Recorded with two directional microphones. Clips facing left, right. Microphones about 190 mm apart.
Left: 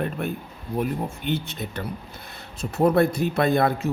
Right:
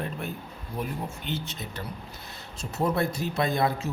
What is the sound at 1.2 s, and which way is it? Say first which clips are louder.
A man's voice: left 6 dB; 55° left (ahead or behind).